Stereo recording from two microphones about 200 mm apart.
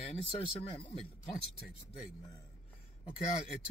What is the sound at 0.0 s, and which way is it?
Speech, 30° left (ahead or behind).